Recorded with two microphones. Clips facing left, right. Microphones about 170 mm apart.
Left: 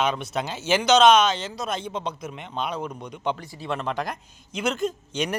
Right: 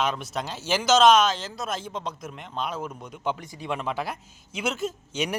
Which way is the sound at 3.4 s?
15° right (ahead or behind).